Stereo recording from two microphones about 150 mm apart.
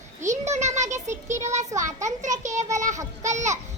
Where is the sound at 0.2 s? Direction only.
50° right (ahead or behind).